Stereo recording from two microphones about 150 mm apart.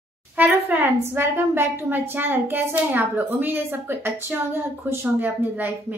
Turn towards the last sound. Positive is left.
turn(degrees=-10)  # may be behind; listen again after turning